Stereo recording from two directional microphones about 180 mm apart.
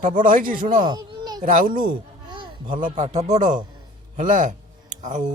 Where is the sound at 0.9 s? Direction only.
20° right (ahead or behind).